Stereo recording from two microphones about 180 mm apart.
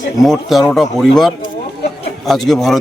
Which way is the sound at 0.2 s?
Centre (ahead or behind).